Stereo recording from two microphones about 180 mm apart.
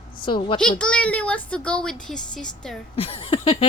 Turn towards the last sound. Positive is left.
turn(degrees=30)  # may be behind; listen again after turning